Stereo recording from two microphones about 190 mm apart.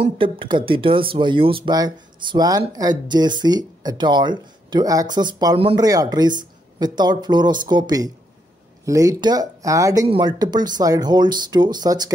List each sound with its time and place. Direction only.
0.0 s speech: 25° right (ahead or behind)